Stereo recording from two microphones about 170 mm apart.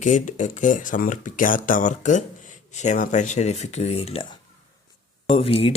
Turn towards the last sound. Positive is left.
turn(degrees=35)  # may be behind; listen again after turning